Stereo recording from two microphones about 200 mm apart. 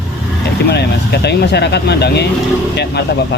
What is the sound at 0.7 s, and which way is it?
Speech, 55° left (ahead or behind).